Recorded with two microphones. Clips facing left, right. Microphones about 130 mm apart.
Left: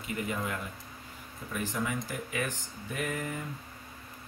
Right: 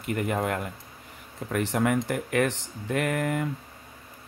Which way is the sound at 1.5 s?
70° right (ahead or behind).